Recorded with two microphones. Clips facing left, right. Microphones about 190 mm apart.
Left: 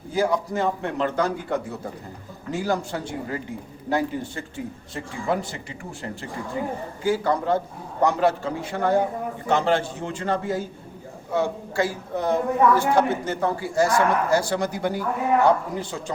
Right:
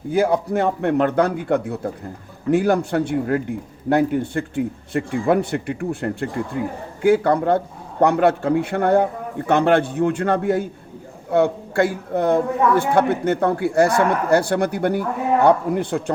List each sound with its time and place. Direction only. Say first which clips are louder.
0.1 s a woman's voice: right 5 dB; 60° right (ahead or behind)